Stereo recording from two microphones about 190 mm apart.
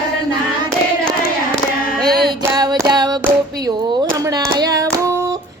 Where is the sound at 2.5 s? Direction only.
20° right (ahead or behind).